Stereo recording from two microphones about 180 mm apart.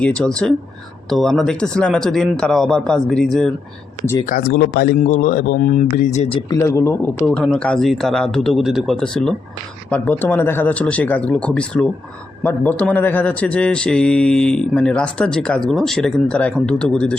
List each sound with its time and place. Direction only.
0.0 s speech: 5° left (ahead or behind)
4.3 s speech: 55° left (ahead or behind); by 6.4 s 40° left (ahead or behind)
6.5 s speech: 15° left (ahead or behind)
7.3 s speech: centre (ahead or behind)